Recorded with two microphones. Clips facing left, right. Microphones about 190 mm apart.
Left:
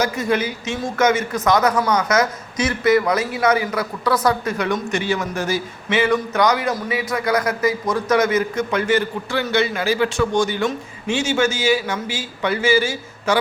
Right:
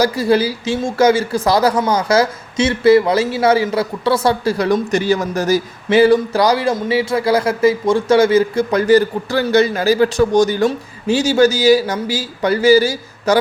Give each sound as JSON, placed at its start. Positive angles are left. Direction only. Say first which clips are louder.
{"t": 0.0, "sound": "a man's voice", "louder": "right 6 dB", "side_deg": -35}